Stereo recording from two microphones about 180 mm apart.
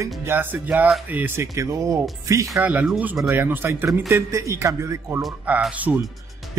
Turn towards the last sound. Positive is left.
turn(degrees=-10)  # may be behind; listen again after turning